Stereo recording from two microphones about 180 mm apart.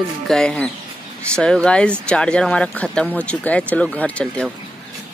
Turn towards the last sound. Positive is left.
turn(degrees=10)  # may be behind; listen again after turning